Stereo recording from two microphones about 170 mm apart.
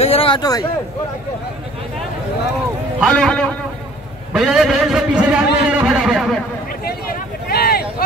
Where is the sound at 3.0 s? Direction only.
5° left (ahead or behind).